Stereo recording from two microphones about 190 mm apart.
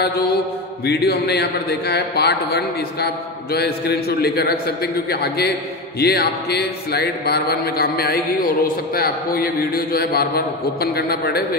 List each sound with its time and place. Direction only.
0.8 s speech: 55° left (ahead or behind)